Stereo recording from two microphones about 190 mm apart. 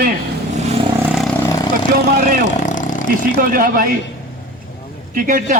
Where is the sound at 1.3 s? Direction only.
20° left (ahead or behind).